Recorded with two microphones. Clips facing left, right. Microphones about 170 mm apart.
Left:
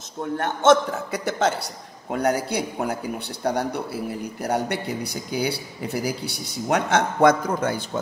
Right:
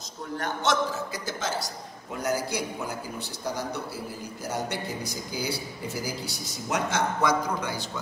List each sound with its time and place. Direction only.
0.4 s a man's voice: 55° left (ahead or behind)